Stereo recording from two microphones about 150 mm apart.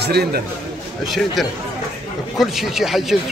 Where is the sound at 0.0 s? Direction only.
90° right.